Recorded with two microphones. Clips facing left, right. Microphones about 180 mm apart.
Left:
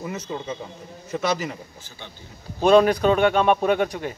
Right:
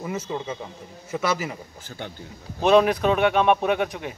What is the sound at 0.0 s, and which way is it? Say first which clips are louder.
A man's voice: right 1 dB; 5° right (ahead or behind).